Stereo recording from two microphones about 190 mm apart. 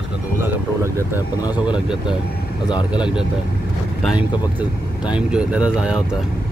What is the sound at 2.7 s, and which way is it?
Speech, 25° left (ahead or behind).